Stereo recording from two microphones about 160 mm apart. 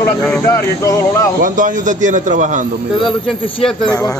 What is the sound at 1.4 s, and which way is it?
A man's voice, 55° right (ahead or behind).